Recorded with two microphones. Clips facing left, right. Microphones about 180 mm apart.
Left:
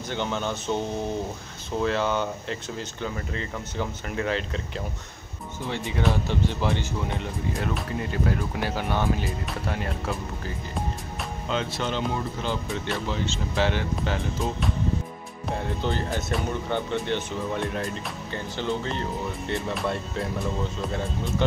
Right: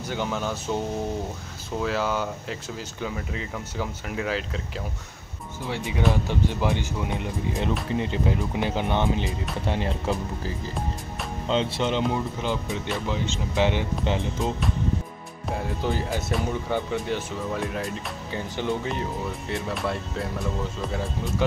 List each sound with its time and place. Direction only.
0.1 s speech: 5° right (ahead or behind)
1.8 s speech: 5° right (ahead or behind)
5.7 s speech: 10° right (ahead or behind)
11.4 s speech: 25° right (ahead or behind)
15.5 s speech: 10° right (ahead or behind)
19.5 s speech: centre (ahead or behind)